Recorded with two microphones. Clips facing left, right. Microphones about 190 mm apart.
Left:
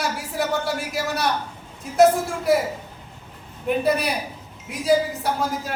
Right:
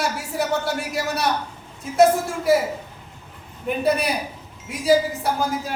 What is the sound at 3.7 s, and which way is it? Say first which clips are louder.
A man's voice: even; centre (ahead or behind).